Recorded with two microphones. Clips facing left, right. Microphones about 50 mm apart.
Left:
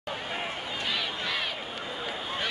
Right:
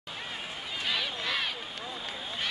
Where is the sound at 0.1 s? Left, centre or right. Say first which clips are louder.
Left 5 dB; left.